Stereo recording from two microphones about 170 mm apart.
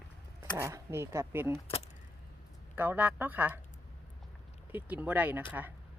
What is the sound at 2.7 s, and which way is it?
Speech, 10° right (ahead or behind).